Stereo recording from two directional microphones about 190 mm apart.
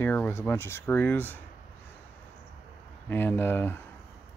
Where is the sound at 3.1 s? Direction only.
10° left (ahead or behind).